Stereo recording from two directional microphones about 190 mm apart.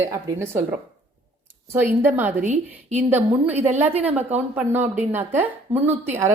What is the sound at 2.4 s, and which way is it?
Speech, 40° right (ahead or behind).